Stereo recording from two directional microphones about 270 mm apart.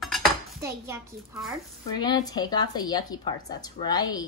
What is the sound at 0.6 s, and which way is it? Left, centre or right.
Speech, centre.